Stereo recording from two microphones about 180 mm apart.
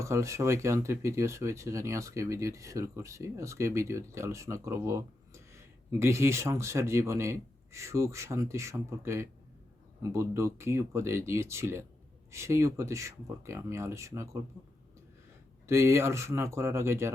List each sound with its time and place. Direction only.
0.0 s speech: 15° right (ahead or behind)
15.6 s speech: 15° right (ahead or behind)